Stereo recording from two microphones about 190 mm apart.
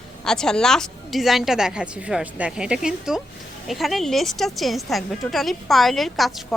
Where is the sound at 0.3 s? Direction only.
5° left (ahead or behind).